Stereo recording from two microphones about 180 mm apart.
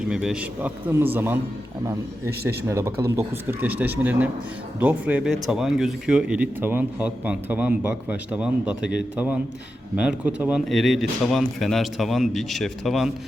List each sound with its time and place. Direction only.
0.1 s speech: 5° right (ahead or behind)